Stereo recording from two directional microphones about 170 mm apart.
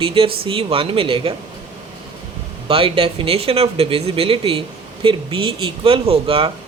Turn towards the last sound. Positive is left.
turn(degrees=-35)  # may be behind; listen again after turning